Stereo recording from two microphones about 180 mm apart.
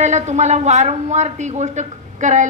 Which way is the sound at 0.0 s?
40° right (ahead or behind).